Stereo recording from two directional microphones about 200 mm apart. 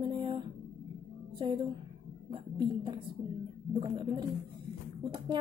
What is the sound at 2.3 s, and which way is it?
A woman's voice, 25° right (ahead or behind).